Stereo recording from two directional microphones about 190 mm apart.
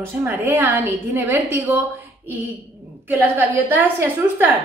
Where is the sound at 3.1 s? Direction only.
10° right (ahead or behind).